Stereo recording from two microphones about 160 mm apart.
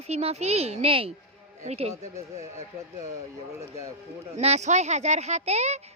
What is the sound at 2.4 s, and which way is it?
Speech, 20° right (ahead or behind).